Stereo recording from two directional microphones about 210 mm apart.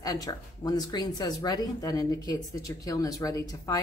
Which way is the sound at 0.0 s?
15° left (ahead or behind).